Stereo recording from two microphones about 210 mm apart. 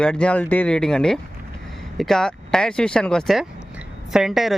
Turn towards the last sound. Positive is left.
turn(degrees=0)  # may be behind; listen again after turning